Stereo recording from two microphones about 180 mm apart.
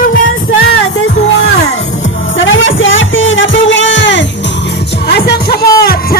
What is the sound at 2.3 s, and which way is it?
Music, 90° left.